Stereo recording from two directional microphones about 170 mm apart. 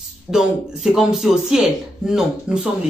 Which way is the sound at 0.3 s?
Centre (ahead or behind).